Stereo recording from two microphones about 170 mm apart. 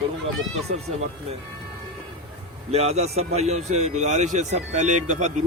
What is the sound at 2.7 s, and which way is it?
Speech, 40° right (ahead or behind).